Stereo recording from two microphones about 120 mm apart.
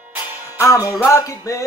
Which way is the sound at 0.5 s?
25° left (ahead or behind).